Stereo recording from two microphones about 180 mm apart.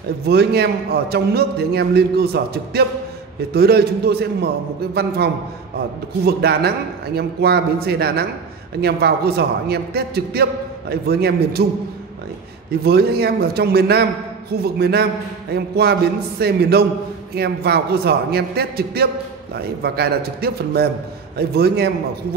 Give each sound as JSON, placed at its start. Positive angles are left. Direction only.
{"t": 0.3, "sound": "a man's voice", "side_deg": -60}
{"t": 12.8, "sound": "a man's voice", "side_deg": -60}